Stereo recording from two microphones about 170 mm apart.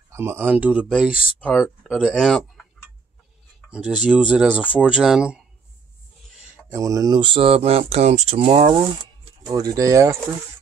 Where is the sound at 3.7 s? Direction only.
5° right (ahead or behind).